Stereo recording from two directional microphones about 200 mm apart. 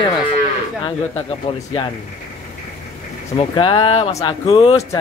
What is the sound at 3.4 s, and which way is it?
Speech, 25° left (ahead or behind).